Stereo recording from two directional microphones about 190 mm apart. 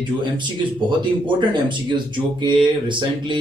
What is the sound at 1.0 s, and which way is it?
Speech, 25° right (ahead or behind).